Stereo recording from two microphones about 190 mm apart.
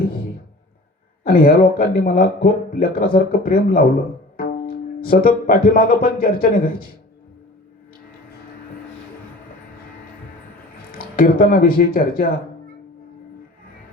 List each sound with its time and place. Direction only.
1.2 s speech: 50° left (ahead or behind)
10.9 s speech: 50° left (ahead or behind)